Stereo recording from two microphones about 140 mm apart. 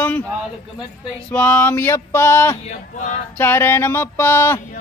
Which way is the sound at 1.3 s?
15° left (ahead or behind).